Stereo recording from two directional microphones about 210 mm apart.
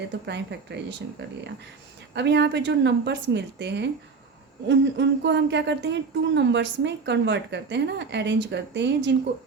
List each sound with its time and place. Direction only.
0.3 s speech: 55° right (ahead or behind)